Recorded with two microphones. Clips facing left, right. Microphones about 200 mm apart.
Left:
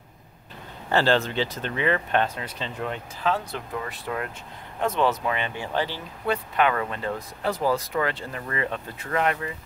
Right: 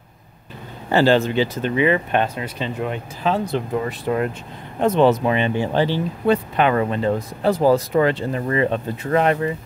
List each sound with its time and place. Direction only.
0.8 s speech: 10° right (ahead or behind); by 9.5 s 30° right (ahead or behind)